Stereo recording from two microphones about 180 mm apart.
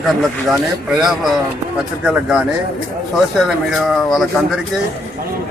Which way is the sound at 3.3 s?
Centre (ahead or behind).